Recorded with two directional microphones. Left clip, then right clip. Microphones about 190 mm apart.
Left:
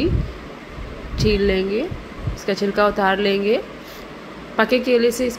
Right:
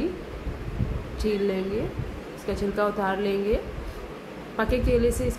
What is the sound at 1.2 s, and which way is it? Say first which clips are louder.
A woman's voice: left 8 dB; 20° left (ahead or behind).